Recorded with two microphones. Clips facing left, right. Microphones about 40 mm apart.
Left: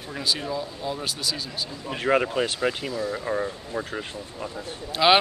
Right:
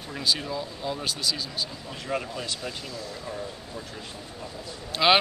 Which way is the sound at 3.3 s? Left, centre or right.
Left.